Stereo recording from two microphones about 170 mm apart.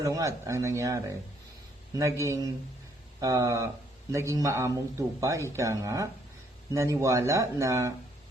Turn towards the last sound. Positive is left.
turn(degrees=-20)  # may be behind; listen again after turning